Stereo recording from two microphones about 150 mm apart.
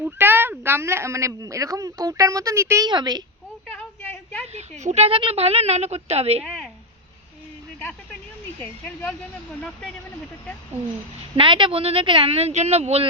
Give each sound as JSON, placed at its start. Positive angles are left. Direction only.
{"t": 0.0, "sound": "speech", "side_deg": -15}
{"t": 4.0, "sound": "a sound", "side_deg": 15}
{"t": 4.5, "sound": "speech", "side_deg": -50}
{"t": 6.4, "sound": "a sound", "side_deg": 0}
{"t": 8.6, "sound": "speech", "side_deg": 10}
{"t": 11.3, "sound": "speech", "side_deg": -35}